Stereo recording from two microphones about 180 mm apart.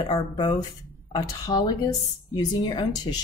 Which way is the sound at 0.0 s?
25° left (ahead or behind).